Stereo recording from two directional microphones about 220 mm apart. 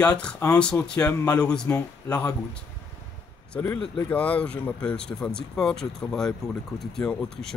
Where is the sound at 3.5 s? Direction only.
5° left (ahead or behind).